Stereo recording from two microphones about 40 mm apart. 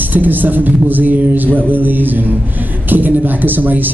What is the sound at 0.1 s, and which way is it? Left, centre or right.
A man's voice, right.